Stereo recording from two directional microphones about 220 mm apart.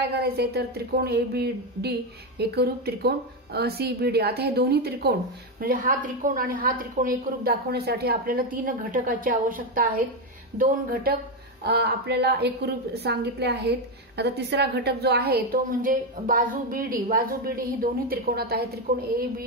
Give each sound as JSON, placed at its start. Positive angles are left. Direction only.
{"t": 0.1, "sound": "a woman's voice", "side_deg": -45}